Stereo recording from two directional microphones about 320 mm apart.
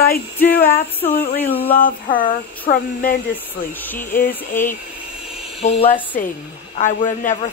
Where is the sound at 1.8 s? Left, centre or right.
Left.